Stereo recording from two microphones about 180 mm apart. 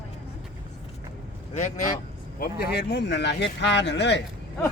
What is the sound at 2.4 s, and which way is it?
Speech, 65° left (ahead or behind).